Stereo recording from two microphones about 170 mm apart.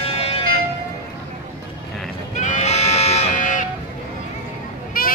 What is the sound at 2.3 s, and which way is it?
Sheep, 45° left (ahead or behind).